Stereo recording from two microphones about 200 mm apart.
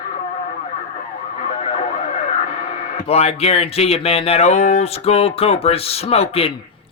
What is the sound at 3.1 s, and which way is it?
Speech, 30° left (ahead or behind).